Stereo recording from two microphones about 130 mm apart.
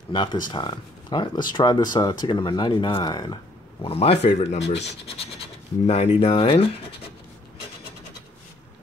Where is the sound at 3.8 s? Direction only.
45° left (ahead or behind).